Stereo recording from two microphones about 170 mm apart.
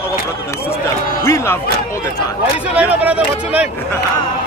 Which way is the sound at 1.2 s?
15° left (ahead or behind).